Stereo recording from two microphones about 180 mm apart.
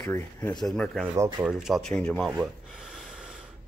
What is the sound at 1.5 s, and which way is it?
Speech, centre (ahead or behind).